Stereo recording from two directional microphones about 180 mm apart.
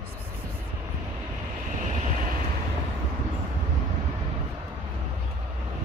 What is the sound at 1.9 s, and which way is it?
Vehicle, 40° right (ahead or behind).